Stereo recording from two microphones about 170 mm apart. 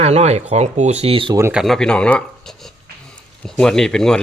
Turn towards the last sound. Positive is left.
turn(degrees=5)  # may be behind; listen again after turning